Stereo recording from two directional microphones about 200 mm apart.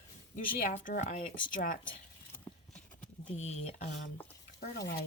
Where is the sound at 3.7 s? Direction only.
45° left (ahead or behind).